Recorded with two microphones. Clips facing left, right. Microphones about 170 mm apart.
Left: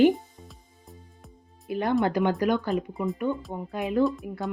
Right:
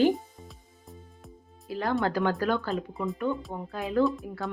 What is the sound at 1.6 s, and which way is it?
Speech, 20° left (ahead or behind).